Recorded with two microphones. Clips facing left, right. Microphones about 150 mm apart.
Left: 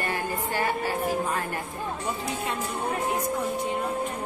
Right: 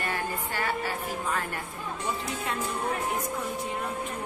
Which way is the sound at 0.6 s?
30° left (ahead or behind).